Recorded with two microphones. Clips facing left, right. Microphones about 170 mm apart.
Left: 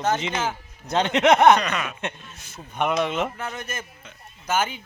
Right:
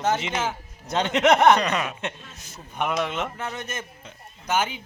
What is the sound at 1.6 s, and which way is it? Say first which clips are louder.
Speech: right 2 dB; 30° right (ahead or behind).